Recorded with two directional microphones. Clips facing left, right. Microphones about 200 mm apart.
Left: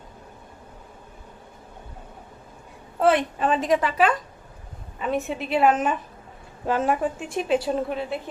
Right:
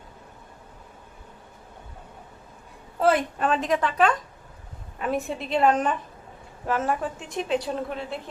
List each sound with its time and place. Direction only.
3.0 s a woman's voice: centre (ahead or behind); by 6.9 s 15° left (ahead or behind)
7.4 s a woman's voice: 5° left (ahead or behind)